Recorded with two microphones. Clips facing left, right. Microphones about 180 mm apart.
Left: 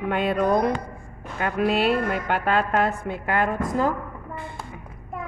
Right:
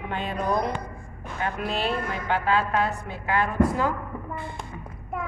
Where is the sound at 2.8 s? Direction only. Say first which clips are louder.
Left 3 dB; 50° left (ahead or behind).